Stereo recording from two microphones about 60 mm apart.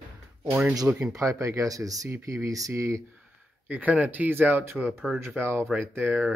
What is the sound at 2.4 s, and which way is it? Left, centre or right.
Speech, right.